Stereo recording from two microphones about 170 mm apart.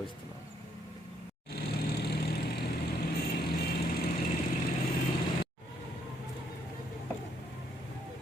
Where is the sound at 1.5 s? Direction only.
75° left (ahead or behind).